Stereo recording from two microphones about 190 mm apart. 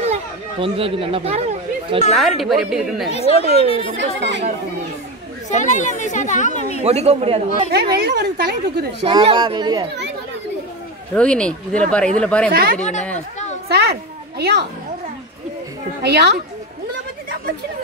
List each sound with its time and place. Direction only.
0.0 s chatter: 30° right (ahead or behind)
2.1 s a woman's voice: centre (ahead or behind)
3.1 s speech: 35° left (ahead or behind)
5.5 s speech: 40° left (ahead or behind)
6.8 s a man's voice: 35° right (ahead or behind)
7.7 s speech: 55° right (ahead or behind)
9.0 s speech: 25° right (ahead or behind)
11.1 s a woman's voice: 5° left (ahead or behind)
12.4 s a child's voice: 55° right (ahead or behind)
16.0 s speech: 60° right (ahead or behind)